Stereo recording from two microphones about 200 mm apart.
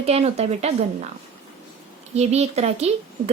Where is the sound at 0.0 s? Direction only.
30° right (ahead or behind).